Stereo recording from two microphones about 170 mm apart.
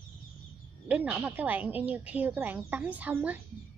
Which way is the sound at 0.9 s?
10° right (ahead or behind).